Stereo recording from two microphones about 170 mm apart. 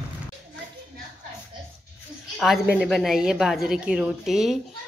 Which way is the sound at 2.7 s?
Centre (ahead or behind).